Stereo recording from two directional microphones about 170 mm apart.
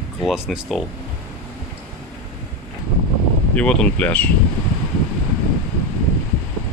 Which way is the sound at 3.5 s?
5° left (ahead or behind).